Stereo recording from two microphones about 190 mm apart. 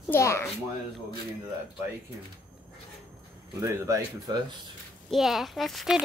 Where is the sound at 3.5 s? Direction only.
15° right (ahead or behind).